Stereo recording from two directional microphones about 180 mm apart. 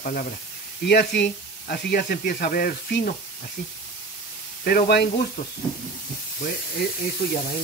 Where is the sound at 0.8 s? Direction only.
65° left (ahead or behind).